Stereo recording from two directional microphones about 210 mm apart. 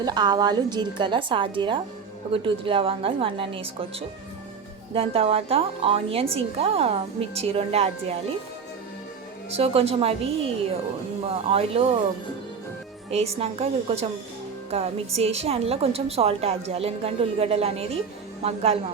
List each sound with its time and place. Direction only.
0.0 s a woman's voice: 20° right (ahead or behind)
4.9 s a woman's voice: 25° right (ahead or behind)
9.5 s a woman's voice: 30° right (ahead or behind)
11.3 s a woman's voice: 30° right (ahead or behind)
13.1 s a woman's voice: 30° right (ahead or behind)